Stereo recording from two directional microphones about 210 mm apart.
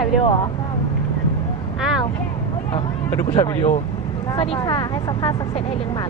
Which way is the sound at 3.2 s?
20° left (ahead or behind).